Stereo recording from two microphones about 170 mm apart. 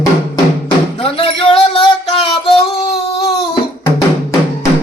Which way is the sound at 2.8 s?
35° left (ahead or behind).